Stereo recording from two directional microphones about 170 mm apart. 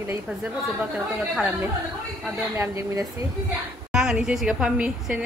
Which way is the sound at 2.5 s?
15° right (ahead or behind).